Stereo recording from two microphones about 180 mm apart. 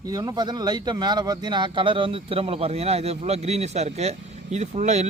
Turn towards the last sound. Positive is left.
turn(degrees=-40)  # may be behind; listen again after turning